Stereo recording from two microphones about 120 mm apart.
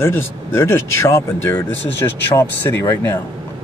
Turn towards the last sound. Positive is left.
turn(degrees=25)  # may be behind; listen again after turning